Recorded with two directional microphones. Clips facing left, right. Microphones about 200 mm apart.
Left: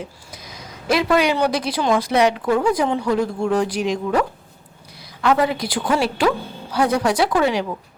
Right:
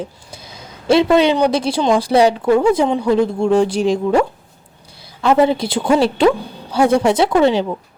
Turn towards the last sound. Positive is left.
turn(degrees=-25)  # may be behind; listen again after turning